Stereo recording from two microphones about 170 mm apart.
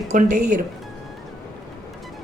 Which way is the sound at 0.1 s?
45° right (ahead or behind).